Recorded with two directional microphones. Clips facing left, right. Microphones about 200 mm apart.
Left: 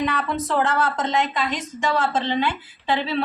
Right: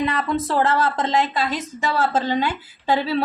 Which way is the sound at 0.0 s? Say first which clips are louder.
Right 2 dB; 35° right (ahead or behind).